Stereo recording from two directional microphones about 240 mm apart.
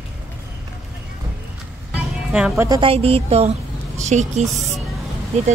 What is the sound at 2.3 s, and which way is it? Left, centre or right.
A woman's voice, centre.